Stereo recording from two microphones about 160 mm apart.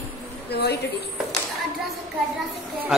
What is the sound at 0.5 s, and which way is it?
Speech, 90° left.